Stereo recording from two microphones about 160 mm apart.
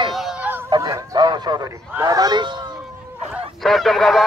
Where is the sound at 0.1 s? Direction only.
Centre (ahead or behind).